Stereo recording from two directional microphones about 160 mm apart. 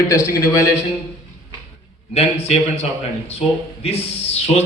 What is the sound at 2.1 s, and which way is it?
Speech, 40° left (ahead or behind).